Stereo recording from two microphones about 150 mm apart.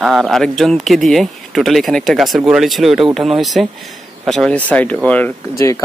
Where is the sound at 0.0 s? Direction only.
Centre (ahead or behind).